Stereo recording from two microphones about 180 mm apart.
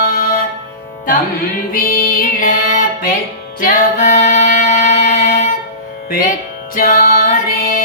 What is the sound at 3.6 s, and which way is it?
Music, 45° left (ahead or behind).